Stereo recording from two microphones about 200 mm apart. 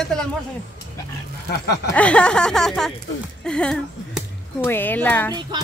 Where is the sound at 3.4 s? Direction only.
5° left (ahead or behind).